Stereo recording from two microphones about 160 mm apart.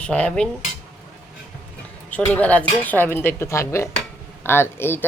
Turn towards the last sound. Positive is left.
turn(degrees=15)  # may be behind; listen again after turning